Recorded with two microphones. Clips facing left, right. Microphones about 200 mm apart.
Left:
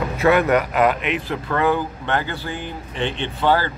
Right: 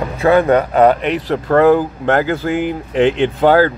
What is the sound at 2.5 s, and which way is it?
Speech, 90° right.